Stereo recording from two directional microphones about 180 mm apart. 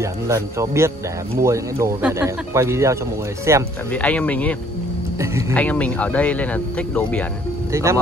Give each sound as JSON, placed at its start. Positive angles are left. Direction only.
{"t": 0.0, "sound": "speech", "side_deg": -15}
{"t": 3.9, "sound": "speech", "side_deg": 10}
{"t": 7.7, "sound": "speech", "side_deg": -15}